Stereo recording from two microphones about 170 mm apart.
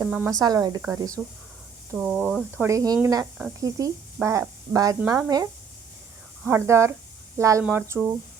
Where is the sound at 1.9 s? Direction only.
5° right (ahead or behind).